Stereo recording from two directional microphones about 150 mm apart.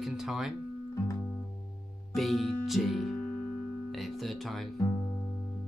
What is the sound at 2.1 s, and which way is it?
Music, centre (ahead or behind).